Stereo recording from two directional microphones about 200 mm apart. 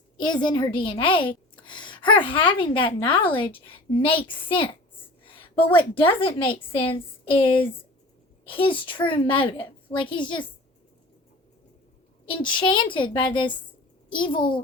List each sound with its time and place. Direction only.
0.4 s a woman's voice: 20° left (ahead or behind)
5.2 s a sound: 25° left (ahead or behind)
5.9 s a woman's voice: 25° left (ahead or behind)
12.3 s a woman's voice: 25° left (ahead or behind)